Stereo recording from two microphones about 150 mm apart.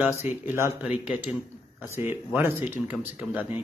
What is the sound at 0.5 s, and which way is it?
Speech, 15° right (ahead or behind).